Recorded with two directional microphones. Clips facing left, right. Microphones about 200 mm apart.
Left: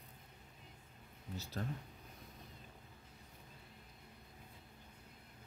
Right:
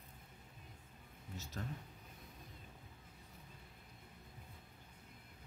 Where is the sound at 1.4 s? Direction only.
35° left (ahead or behind).